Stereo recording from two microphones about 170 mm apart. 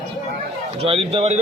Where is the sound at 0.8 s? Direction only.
35° right (ahead or behind).